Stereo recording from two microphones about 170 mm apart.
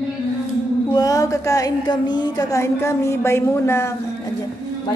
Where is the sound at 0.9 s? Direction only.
20° left (ahead or behind).